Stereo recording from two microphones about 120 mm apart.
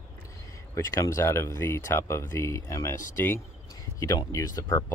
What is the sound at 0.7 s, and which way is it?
Speech, 25° left (ahead or behind).